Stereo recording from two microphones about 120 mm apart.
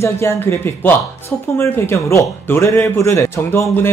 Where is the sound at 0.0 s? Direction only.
20° left (ahead or behind).